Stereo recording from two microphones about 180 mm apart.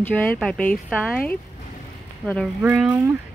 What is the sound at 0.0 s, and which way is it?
Speech, 5° left (ahead or behind).